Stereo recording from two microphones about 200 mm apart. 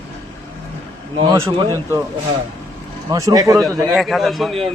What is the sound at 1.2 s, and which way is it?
Speech, 15° right (ahead or behind).